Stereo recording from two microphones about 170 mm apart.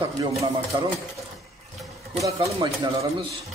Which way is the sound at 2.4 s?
20° right (ahead or behind).